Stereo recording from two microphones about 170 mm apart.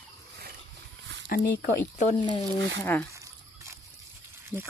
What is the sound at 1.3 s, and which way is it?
Speech, 55° left (ahead or behind).